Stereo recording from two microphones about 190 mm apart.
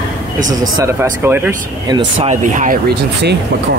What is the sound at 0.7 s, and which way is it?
Speech, 15° right (ahead or behind).